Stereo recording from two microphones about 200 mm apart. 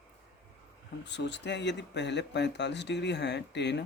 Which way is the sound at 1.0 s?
60° left (ahead or behind).